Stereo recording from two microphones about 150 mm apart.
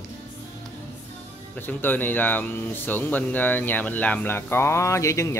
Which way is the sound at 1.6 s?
10° left (ahead or behind).